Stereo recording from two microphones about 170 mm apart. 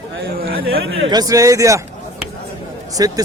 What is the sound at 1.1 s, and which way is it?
Speech, 20° right (ahead or behind).